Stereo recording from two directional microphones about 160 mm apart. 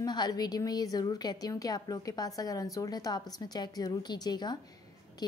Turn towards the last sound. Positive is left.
turn(degrees=25)  # may be behind; listen again after turning